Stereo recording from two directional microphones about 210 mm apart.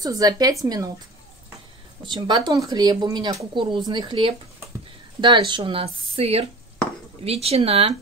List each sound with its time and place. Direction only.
0.0 s a woman's voice: 15° right (ahead or behind)
2.0 s speech: 20° right (ahead or behind)